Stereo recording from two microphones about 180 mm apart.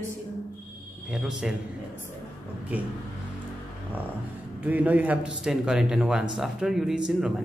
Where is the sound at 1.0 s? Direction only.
Centre (ahead or behind).